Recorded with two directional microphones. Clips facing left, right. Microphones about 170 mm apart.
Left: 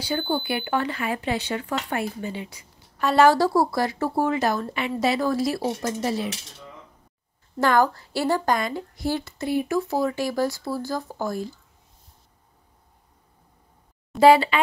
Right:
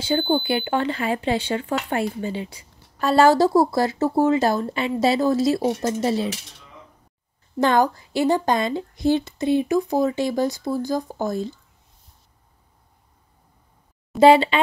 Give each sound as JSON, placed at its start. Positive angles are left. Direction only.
{"t": 0.0, "sound": "speech", "side_deg": -25}
{"t": 7.6, "sound": "speech", "side_deg": -20}
{"t": 14.2, "sound": "speech", "side_deg": -25}